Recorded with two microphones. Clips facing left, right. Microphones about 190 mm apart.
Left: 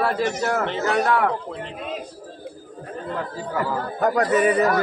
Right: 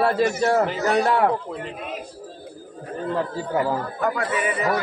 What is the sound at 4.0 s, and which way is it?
Speech, 40° left (ahead or behind).